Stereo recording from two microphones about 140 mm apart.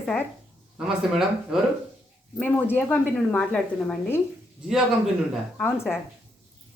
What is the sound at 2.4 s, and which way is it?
A woman's voice, 15° left (ahead or behind).